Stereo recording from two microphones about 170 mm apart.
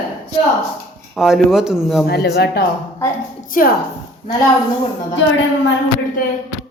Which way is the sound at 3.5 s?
55° left (ahead or behind).